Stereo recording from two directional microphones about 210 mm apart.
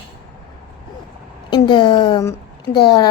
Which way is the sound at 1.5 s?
20° left (ahead or behind).